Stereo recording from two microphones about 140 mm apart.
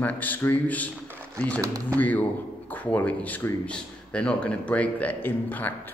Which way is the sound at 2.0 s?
10° left (ahead or behind).